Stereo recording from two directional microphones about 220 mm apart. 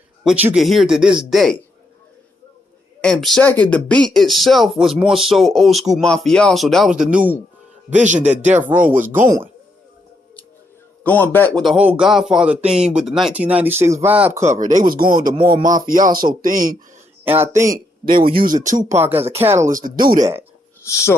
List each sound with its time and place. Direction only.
0.2 s speech: 5° right (ahead or behind)
3.0 s speech: centre (ahead or behind)
7.9 s speech: 35° right (ahead or behind)
8.2 s speech: 5° right (ahead or behind)
11.1 s speech: 10° left (ahead or behind); by 14.5 s 10° right (ahead or behind)
14.5 s speech: 35° right (ahead or behind)
17.2 s speech: 10° right (ahead or behind)
18.0 s speech: 40° right (ahead or behind)
18.9 s speech: 10° right (ahead or behind)
19.7 s speech: 40° right (ahead or behind)